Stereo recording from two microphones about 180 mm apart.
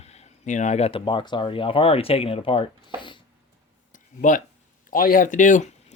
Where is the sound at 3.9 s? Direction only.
45° left (ahead or behind).